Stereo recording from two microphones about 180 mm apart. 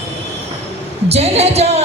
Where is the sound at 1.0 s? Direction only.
35° right (ahead or behind).